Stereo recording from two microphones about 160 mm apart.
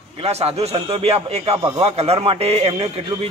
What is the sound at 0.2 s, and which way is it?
Speech, 40° right (ahead or behind).